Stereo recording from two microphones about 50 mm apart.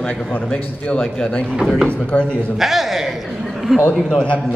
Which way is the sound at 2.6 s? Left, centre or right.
Centre.